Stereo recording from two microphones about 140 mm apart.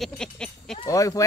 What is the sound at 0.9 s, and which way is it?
Speech, 25° left (ahead or behind).